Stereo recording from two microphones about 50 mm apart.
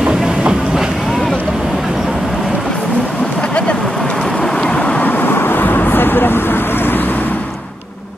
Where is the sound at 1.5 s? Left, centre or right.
Centre.